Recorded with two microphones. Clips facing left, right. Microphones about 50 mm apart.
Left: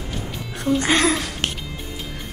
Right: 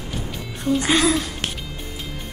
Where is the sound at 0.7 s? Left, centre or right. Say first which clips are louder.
Even; left.